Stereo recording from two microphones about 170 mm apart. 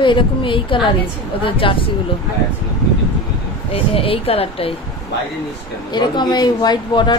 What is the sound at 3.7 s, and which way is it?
Speech, 35° left (ahead or behind).